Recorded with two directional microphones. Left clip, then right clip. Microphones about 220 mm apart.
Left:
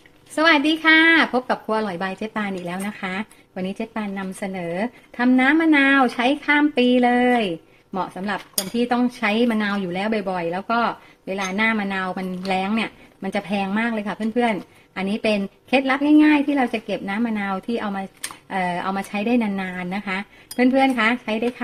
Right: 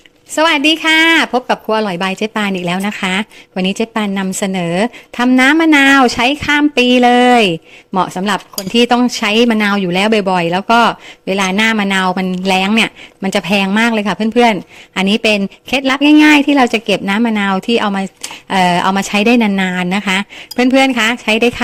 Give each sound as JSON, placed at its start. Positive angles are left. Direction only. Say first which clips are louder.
{"t": 0.3, "sound": "speech", "louder": "right 6 dB", "side_deg": -35}